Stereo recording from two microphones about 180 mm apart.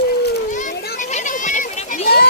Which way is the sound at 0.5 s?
45° left (ahead or behind).